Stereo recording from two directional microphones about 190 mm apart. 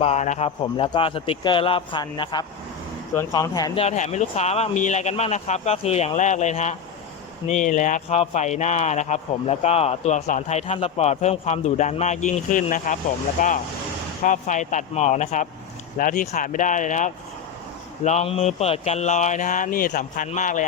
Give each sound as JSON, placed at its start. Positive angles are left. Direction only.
{"t": 0.0, "sound": "speech", "side_deg": 35}
{"t": 3.8, "sound": "speech", "side_deg": 35}